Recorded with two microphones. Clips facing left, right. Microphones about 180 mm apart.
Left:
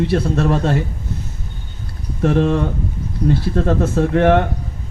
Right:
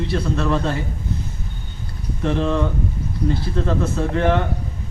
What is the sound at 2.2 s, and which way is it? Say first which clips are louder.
A man's voice: left 4 dB; 50° left (ahead or behind).